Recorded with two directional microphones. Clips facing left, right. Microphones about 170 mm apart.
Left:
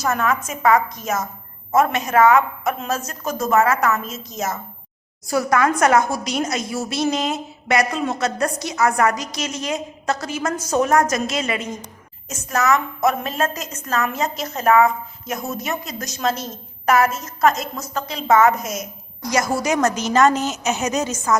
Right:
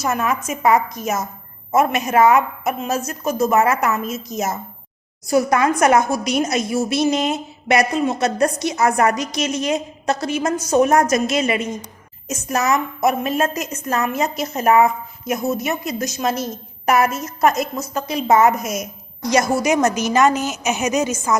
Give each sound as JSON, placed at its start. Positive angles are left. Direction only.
{"t": 0.1, "sound": "a woman's voice", "side_deg": -10}
{"t": 2.1, "sound": "a woman's voice", "side_deg": -25}
{"t": 2.6, "sound": "a woman's voice", "side_deg": -10}
{"t": 3.6, "sound": "a woman's voice", "side_deg": -20}
{"t": 5.3, "sound": "a woman's voice", "side_deg": -20}
{"t": 15.3, "sound": "a woman's voice", "side_deg": -10}
{"t": 18.3, "sound": "a woman's voice", "side_deg": -30}
{"t": 18.6, "sound": "a woman's voice", "side_deg": -10}
{"t": 19.3, "sound": "a woman's voice", "side_deg": -20}